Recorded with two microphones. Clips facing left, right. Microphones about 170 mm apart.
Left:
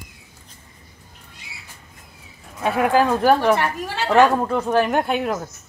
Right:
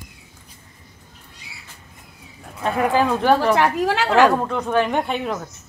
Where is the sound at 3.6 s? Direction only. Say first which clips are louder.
Right 6 dB; 85° right.